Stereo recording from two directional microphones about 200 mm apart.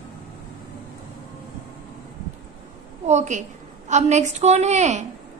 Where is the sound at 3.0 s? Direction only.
35° right (ahead or behind).